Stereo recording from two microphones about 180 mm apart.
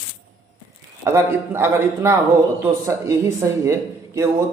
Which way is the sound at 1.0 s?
15° right (ahead or behind).